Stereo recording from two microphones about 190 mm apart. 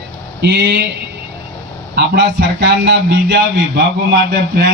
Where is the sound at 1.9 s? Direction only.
65° right (ahead or behind).